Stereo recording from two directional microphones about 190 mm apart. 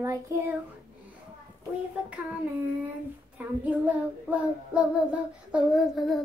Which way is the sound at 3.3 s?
10° right (ahead or behind).